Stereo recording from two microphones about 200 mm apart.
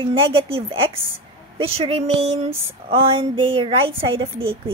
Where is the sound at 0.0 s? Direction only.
25° right (ahead or behind).